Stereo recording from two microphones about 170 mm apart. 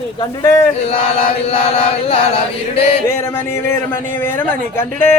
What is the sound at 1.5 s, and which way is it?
Chant, 35° left (ahead or behind).